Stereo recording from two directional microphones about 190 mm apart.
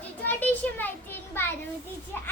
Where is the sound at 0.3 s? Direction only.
10° left (ahead or behind).